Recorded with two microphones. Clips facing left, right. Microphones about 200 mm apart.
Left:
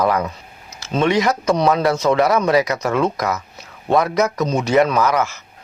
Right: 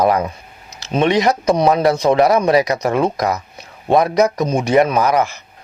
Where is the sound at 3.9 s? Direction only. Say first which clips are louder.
Right 3 dB; 20° right (ahead or behind).